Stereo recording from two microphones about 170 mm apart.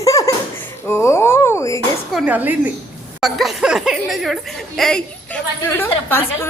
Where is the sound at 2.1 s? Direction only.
10° right (ahead or behind).